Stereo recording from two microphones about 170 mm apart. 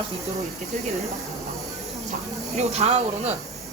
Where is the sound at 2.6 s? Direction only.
40° right (ahead or behind).